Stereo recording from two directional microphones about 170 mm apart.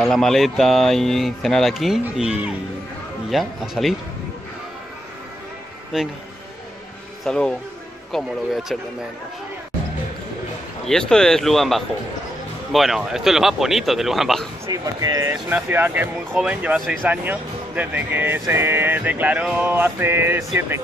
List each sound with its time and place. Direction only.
0.0 s speech: centre (ahead or behind)
5.9 s speech: 5° right (ahead or behind)
7.2 s speech: 5° left (ahead or behind)
10.9 s speech: 5° left (ahead or behind)
14.7 s speech: 20° right (ahead or behind)